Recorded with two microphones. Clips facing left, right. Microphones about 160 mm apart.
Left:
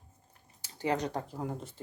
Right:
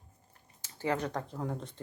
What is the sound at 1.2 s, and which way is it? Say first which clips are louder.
Speech: even; 5° left (ahead or behind).